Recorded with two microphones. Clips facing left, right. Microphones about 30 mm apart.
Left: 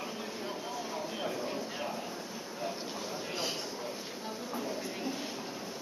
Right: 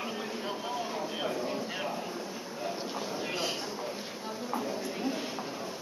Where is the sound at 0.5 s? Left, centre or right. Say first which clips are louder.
Right 4 dB; right.